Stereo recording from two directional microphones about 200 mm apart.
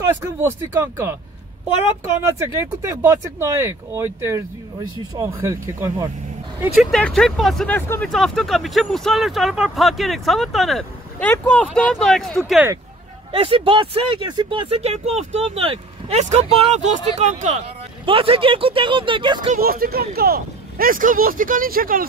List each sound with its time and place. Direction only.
0.2 s speech: 10° right (ahead or behind)
2.1 s speech: 10° right (ahead or behind)
6.6 s speech: 5° right (ahead or behind)
13.3 s speech: 25° right (ahead or behind)
19.5 s speech: 45° right (ahead or behind)